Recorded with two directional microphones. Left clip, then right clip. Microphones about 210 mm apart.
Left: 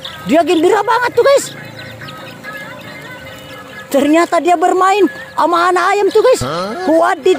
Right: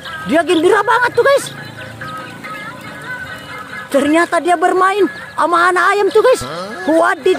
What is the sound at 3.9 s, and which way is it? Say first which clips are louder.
Speech: left 2 dB; 15° left (ahead or behind).